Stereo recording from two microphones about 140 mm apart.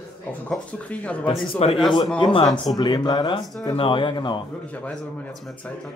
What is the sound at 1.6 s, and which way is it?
Speech, 45° left (ahead or behind).